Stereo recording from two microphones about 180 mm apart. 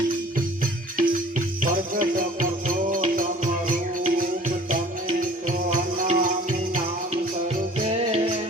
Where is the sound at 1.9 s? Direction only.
50° right (ahead or behind).